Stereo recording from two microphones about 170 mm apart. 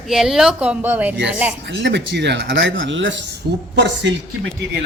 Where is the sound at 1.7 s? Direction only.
90° right.